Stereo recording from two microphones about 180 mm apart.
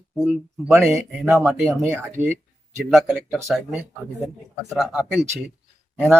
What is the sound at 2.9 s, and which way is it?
Speech, centre (ahead or behind).